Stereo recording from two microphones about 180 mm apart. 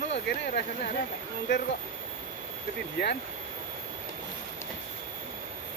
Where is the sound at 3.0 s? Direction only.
65° left (ahead or behind).